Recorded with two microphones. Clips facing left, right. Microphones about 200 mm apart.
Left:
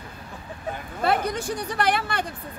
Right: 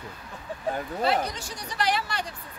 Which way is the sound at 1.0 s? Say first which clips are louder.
Left 4 dB; 55° left (ahead or behind).